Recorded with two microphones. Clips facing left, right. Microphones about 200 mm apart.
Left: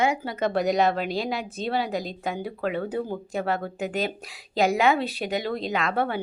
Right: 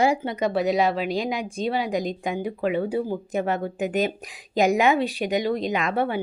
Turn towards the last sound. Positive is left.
turn(degrees=-15)  # may be behind; listen again after turning